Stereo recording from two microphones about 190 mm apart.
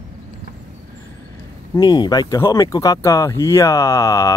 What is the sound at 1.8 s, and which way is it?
Speech, 20° left (ahead or behind).